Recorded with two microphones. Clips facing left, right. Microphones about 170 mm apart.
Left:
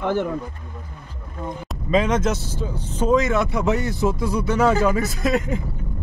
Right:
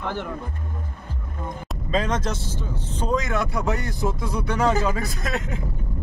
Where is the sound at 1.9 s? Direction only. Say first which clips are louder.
Left 5 dB; 10° left (ahead or behind).